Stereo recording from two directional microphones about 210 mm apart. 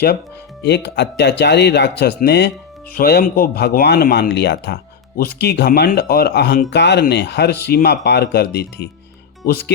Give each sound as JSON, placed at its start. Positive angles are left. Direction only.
{"t": 0.6, "sound": "speech", "side_deg": 55}